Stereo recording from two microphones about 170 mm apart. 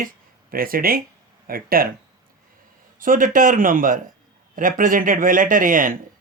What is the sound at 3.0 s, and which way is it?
Speech, 55° right (ahead or behind).